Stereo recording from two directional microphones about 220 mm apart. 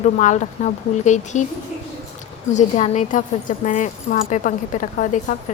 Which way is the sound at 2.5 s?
35° left (ahead or behind).